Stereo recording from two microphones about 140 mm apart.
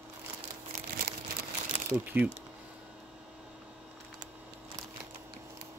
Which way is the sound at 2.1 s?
10° right (ahead or behind).